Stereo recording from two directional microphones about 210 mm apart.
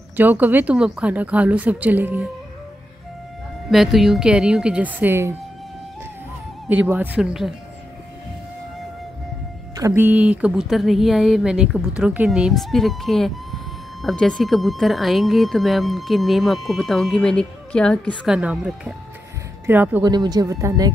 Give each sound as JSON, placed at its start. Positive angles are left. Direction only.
{"t": 0.1, "sound": "speech", "side_deg": -10}
{"t": 3.7, "sound": "speech", "side_deg": 0}
{"t": 6.7, "sound": "speech", "side_deg": -5}
{"t": 9.8, "sound": "speech", "side_deg": -10}
{"t": 20.1, "sound": "speech", "side_deg": -20}